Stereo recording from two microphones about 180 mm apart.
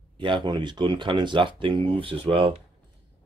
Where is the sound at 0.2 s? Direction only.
25° right (ahead or behind).